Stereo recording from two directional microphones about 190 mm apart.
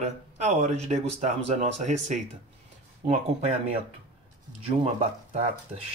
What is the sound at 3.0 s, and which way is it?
Speech, 35° right (ahead or behind).